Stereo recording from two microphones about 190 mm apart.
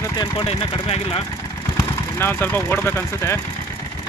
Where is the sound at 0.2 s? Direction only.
25° left (ahead or behind).